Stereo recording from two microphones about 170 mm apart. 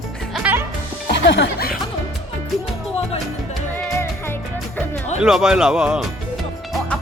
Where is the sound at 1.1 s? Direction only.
90° left.